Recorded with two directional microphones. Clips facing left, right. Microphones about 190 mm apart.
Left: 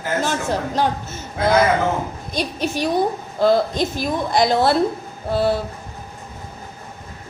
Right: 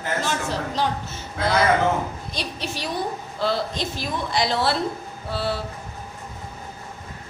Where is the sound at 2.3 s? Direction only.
50° left (ahead or behind).